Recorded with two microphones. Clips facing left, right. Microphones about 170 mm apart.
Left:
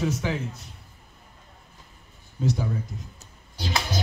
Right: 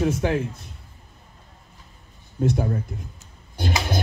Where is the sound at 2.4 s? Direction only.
55° right (ahead or behind).